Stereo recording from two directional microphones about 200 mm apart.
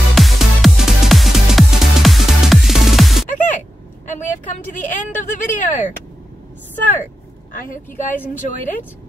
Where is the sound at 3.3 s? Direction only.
40° left (ahead or behind).